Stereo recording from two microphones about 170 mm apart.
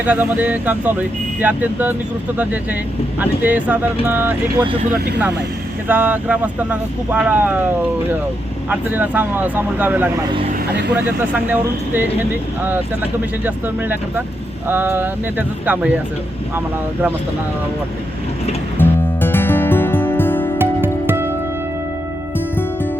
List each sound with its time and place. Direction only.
0.0 s speech: 10° right (ahead or behind)
3.4 s speech: 10° right (ahead or behind)
4.9 s speech: 70° right (ahead or behind)
5.9 s speech: 10° right (ahead or behind)
8.7 s speech: 10° right (ahead or behind)
10.7 s speech: 75° right (ahead or behind)
10.9 s speech: 10° right (ahead or behind)
12.6 s speech: 10° right (ahead or behind)
18.8 s music: 10° left (ahead or behind)
20.6 s music: 10° right (ahead or behind)